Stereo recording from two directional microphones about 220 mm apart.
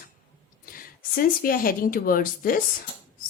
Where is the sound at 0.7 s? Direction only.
40° left (ahead or behind).